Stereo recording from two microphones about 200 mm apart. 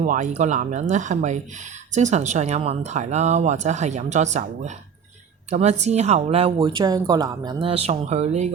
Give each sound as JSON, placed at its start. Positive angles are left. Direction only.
{"t": 0.0, "sound": "speech", "side_deg": -40}